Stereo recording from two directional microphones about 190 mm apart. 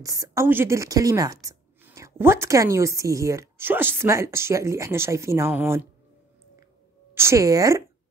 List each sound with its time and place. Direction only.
0.0 s speech: 15° right (ahead or behind)
7.2 s speech: 15° right (ahead or behind)